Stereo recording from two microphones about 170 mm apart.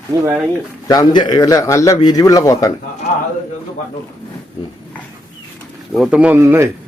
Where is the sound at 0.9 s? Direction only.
25° left (ahead or behind).